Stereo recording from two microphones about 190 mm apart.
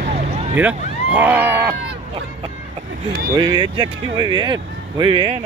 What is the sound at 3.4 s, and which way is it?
Speech, 20° right (ahead or behind).